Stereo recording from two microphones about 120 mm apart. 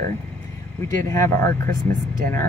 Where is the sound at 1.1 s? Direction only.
25° left (ahead or behind).